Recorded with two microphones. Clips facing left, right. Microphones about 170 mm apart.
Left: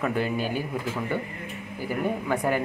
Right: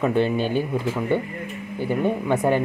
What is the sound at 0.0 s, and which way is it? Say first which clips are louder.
Speech: right 6 dB; 25° right (ahead or behind).